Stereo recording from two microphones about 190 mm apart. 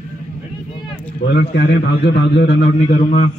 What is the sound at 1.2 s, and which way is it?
A man's voice, 60° left (ahead or behind).